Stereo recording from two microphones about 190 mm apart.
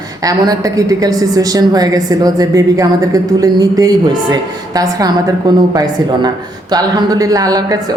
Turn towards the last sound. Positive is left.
turn(degrees=-20)  # may be behind; listen again after turning